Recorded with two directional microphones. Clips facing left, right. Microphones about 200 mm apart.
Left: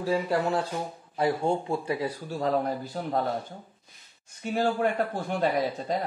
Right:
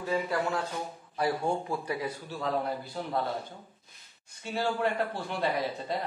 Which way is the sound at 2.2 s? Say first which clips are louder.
Left 5 dB; 40° left (ahead or behind).